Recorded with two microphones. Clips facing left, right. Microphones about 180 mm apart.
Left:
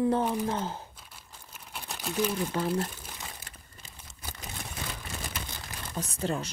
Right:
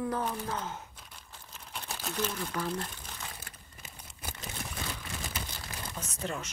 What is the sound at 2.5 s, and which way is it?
Speech, 30° left (ahead or behind).